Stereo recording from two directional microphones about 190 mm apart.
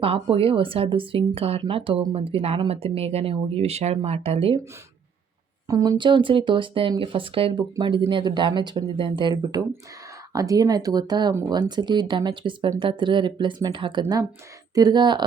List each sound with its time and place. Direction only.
0.0 s speech: 30° right (ahead or behind)
5.6 s speech: 20° right (ahead or behind)